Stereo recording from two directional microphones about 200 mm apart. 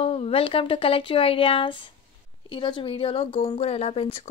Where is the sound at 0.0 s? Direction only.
30° left (ahead or behind).